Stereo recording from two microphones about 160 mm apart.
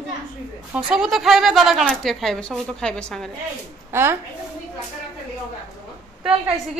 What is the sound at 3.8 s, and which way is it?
Speech, 15° right (ahead or behind).